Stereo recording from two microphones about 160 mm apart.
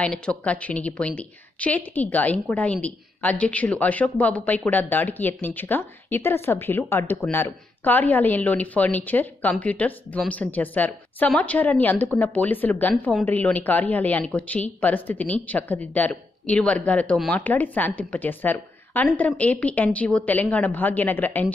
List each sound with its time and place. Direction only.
0.0 s a woman's voice: 5° left (ahead or behind)